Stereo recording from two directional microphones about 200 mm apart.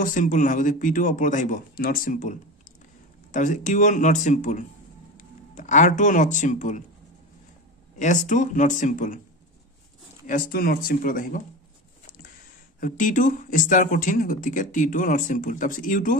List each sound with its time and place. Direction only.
0.0 s speech: 40° left (ahead or behind)
8.0 s speech: 40° left (ahead or behind)
10.2 s speech: 45° left (ahead or behind)
12.8 s speech: 40° left (ahead or behind)